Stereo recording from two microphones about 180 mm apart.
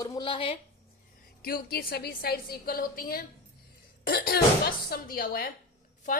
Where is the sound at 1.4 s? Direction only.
55° left (ahead or behind).